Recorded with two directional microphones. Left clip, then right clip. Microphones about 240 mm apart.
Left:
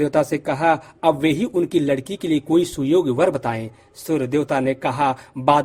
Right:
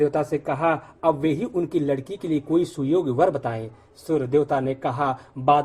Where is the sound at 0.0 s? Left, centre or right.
Left.